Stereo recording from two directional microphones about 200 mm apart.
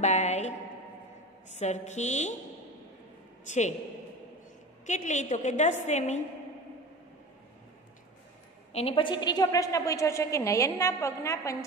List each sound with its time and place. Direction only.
0.0 s a woman's voice: 35° left (ahead or behind)
1.6 s a woman's voice: 35° left (ahead or behind)
3.4 s a woman's voice: 35° left (ahead or behind)
4.8 s a woman's voice: 35° left (ahead or behind)
8.7 s a woman's voice: 30° left (ahead or behind)